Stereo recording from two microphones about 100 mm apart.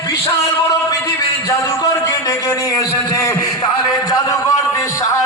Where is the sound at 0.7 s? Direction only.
35° left (ahead or behind).